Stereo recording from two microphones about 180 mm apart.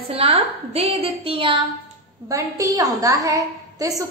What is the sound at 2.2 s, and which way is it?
A woman's voice, 20° right (ahead or behind).